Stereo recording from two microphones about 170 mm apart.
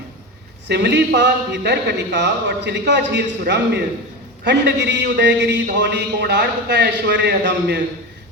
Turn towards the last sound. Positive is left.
turn(degrees=-90)